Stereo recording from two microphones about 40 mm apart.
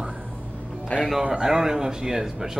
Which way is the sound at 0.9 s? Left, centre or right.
Left.